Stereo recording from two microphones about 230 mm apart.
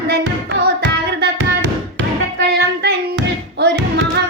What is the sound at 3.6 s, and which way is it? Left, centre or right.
Music, right.